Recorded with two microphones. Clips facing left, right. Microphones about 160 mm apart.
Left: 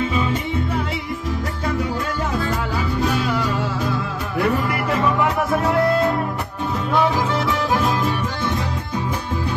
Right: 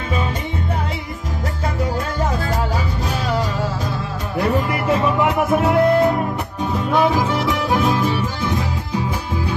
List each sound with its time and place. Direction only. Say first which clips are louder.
2.3 s music: right 1 dB; 40° right (ahead or behind)
4.8 s music: right 2 dB; 20° right (ahead or behind)